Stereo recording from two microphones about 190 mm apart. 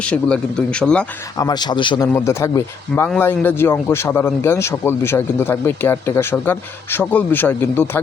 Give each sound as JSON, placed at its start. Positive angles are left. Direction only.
{"t": 0.0, "sound": "a man's voice", "side_deg": 5}
{"t": 1.4, "sound": "a man's voice", "side_deg": 20}
{"t": 2.1, "sound": "speech", "side_deg": 15}